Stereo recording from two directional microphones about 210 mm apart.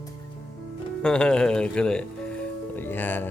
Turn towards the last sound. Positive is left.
turn(degrees=10)  # may be behind; listen again after turning